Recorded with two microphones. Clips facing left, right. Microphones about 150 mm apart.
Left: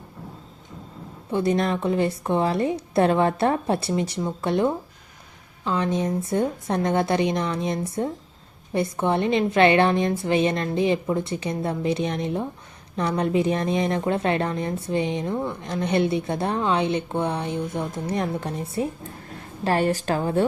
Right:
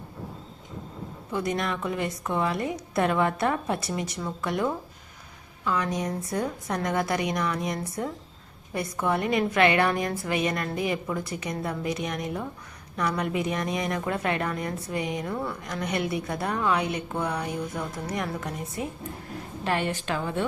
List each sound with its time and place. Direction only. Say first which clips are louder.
1.3 s a woman's voice: left 6 dB; 30° left (ahead or behind)